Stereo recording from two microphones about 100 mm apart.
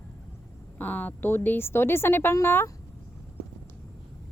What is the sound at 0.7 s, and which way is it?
A woman's voice, 15° left (ahead or behind).